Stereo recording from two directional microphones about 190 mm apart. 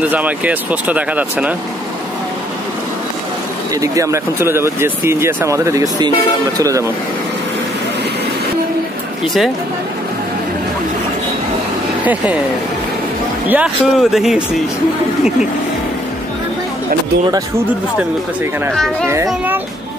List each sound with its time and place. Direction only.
0.0 s speech: 10° right (ahead or behind)
3.8 s speech: 15° right (ahead or behind)
9.2 s speech: centre (ahead or behind)
12.0 s speech: 10° right (ahead or behind)
13.5 s speech: 5° right (ahead or behind)
19.2 s speech: 10° right (ahead or behind)